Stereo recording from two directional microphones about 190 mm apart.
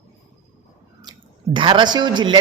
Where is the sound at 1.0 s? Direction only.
25° right (ahead or behind).